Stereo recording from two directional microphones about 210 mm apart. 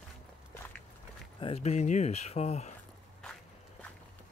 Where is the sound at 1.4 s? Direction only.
30° left (ahead or behind).